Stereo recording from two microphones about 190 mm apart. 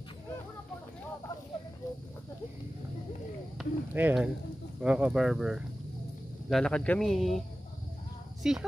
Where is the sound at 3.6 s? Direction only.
5° right (ahead or behind).